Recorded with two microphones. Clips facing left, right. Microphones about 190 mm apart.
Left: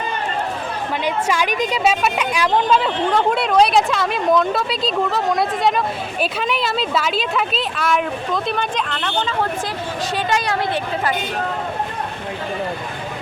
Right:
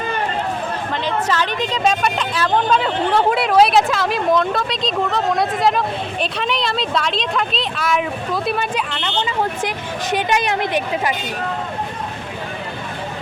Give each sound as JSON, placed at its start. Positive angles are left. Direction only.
{"t": 1.0, "sound": "a woman's voice", "side_deg": 10}
{"t": 9.0, "sound": "speech", "side_deg": -15}